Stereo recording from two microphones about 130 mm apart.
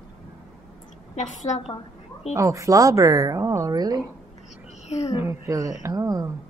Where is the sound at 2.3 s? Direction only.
25° right (ahead or behind).